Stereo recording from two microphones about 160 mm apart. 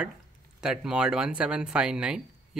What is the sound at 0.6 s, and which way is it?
Speech, 5° right (ahead or behind).